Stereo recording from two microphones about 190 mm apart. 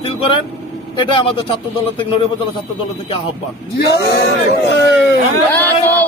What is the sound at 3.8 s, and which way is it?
Speech, 60° left (ahead or behind).